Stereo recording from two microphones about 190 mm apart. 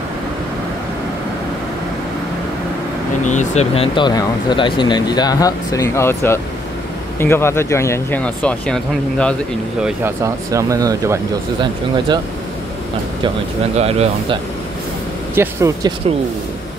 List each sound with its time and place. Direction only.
3.3 s speech: 35° left (ahead or behind); by 9.3 s 5° left (ahead or behind)
9.8 s speech: 15° right (ahead or behind)
13.7 s speech: 35° right (ahead or behind)
15.3 s speech: 15° right (ahead or behind)